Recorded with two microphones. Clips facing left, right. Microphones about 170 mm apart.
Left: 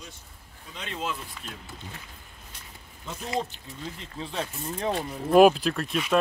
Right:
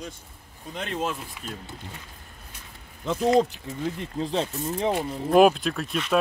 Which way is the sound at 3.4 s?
60° right (ahead or behind).